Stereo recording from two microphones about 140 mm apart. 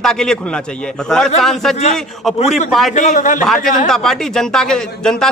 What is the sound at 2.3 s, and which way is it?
A man's voice, 55° left (ahead or behind).